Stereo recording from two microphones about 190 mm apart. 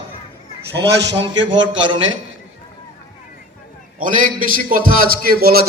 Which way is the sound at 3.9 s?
45° right (ahead or behind).